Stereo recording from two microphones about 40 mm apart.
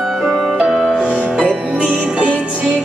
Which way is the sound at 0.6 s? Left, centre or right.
Centre.